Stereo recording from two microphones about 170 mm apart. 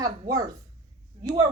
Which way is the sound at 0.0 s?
20° right (ahead or behind).